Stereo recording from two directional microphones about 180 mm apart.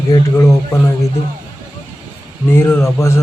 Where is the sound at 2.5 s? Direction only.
15° left (ahead or behind).